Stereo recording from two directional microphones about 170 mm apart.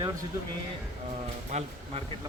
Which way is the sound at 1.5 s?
40° right (ahead or behind).